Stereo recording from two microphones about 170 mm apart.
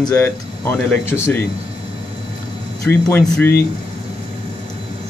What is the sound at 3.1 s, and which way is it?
Speech, 10° left (ahead or behind).